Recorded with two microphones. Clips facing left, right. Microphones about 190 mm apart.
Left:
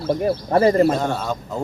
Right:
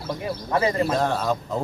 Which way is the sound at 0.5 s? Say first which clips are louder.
Left 7 dB; 45° left (ahead or behind).